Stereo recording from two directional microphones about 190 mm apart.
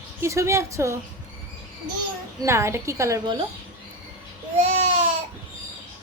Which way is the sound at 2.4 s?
15° right (ahead or behind).